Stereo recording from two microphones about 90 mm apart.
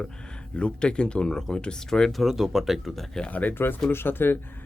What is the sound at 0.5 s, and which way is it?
Speech, 10° left (ahead or behind).